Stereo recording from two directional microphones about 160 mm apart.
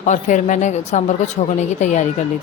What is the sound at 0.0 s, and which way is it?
Speech, 50° left (ahead or behind).